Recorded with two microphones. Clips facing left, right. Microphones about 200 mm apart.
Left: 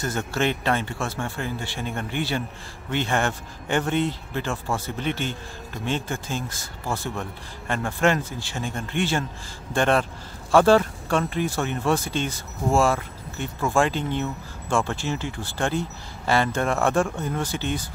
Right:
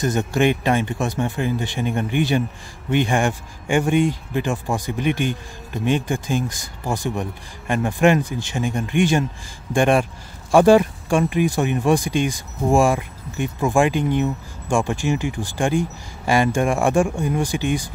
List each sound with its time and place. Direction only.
0.0 s speech: 15° right (ahead or behind)